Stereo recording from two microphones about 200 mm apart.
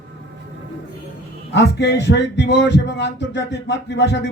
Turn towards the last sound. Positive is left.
turn(degrees=60)  # may be behind; listen again after turning